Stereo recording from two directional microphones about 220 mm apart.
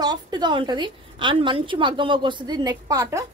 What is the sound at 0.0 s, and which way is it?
A woman's voice, 20° right (ahead or behind).